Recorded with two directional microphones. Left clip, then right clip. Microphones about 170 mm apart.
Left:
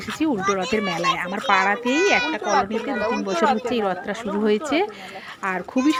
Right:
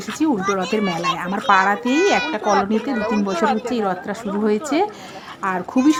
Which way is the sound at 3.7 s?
20° left (ahead or behind).